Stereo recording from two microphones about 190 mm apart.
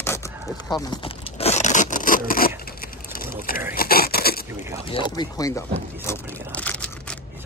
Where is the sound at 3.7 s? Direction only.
50° left (ahead or behind).